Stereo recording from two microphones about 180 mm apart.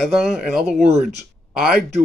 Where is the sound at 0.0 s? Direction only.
Centre (ahead or behind).